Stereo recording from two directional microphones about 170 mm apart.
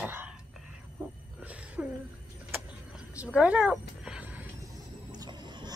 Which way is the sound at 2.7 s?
5° right (ahead or behind).